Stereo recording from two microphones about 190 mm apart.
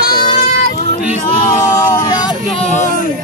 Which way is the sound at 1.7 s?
15° left (ahead or behind).